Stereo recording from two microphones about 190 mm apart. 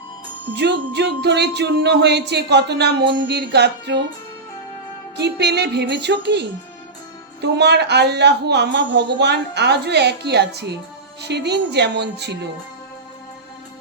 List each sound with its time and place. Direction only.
0.5 s a woman's voice: 65° right (ahead or behind)
5.1 s a woman's voice: 60° right (ahead or behind)
7.4 s a woman's voice: 60° right (ahead or behind)